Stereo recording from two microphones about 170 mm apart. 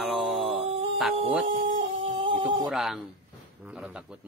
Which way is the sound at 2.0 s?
30° right (ahead or behind).